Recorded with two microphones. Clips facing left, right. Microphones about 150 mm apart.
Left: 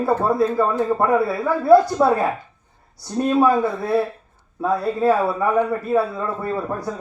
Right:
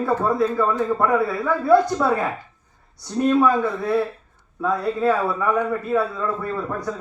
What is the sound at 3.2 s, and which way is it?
A man's voice, 30° left (ahead or behind).